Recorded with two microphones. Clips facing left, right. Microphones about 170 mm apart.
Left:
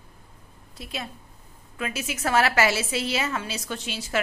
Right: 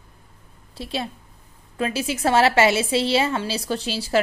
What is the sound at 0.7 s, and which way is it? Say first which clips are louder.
A woman's voice: right 7 dB; 30° right (ahead or behind).